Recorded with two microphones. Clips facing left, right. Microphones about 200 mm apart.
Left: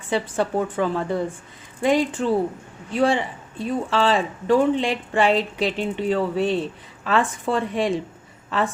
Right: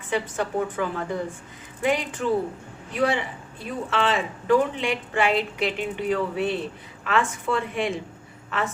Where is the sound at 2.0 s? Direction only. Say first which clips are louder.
Left 6 dB; 30° left (ahead or behind).